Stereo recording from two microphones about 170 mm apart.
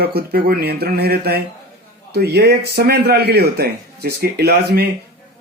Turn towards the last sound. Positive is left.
turn(degrees=-70)  # may be behind; listen again after turning